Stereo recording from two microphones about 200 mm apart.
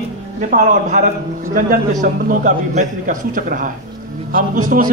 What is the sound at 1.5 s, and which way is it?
A man's voice, 40° right (ahead or behind).